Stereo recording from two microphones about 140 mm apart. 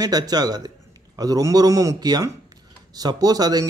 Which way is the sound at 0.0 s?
30° right (ahead or behind).